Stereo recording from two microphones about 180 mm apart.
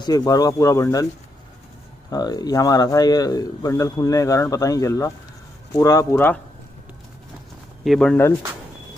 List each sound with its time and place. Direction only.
0.0 s speech: 20° left (ahead or behind)
2.0 s speech: 20° left (ahead or behind)
7.8 s speech: centre (ahead or behind)